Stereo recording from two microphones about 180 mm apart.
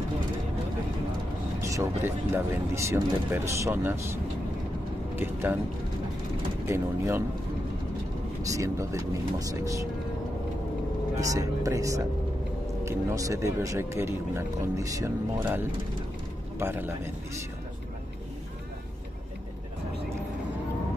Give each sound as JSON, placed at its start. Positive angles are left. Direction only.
{"t": 1.6, "sound": "speech", "side_deg": -15}
{"t": 5.1, "sound": "speech", "side_deg": -10}
{"t": 6.6, "sound": "speech", "side_deg": -15}
{"t": 8.5, "sound": "speech", "side_deg": -15}
{"t": 11.1, "sound": "speech", "side_deg": -20}